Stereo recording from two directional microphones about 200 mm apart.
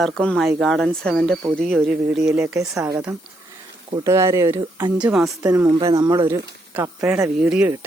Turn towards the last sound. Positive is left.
turn(degrees=-5)  # may be behind; listen again after turning